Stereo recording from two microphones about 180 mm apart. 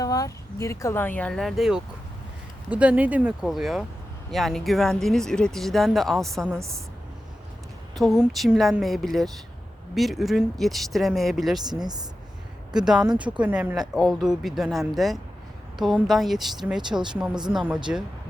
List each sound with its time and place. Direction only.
0.0 s speech: 20° left (ahead or behind); by 6.6 s centre (ahead or behind)
7.9 s speech: centre (ahead or behind)
11.6 s speech: 20° right (ahead or behind)
12.7 s speech: 5° right (ahead or behind)